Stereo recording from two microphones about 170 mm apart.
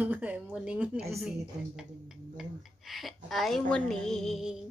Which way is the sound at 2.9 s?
Centre (ahead or behind).